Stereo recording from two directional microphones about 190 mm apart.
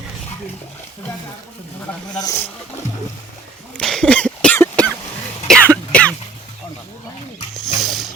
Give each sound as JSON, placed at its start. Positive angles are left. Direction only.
{"t": 2.0, "sound": "speech", "side_deg": 20}
{"t": 3.8, "sound": "cough", "side_deg": 5}
{"t": 7.8, "sound": "wild animals", "side_deg": 0}